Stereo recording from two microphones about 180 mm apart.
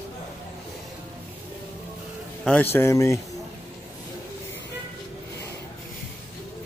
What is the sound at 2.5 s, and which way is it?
Speech, 10° left (ahead or behind).